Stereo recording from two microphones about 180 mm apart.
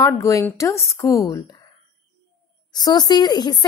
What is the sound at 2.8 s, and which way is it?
Speech, 20° left (ahead or behind).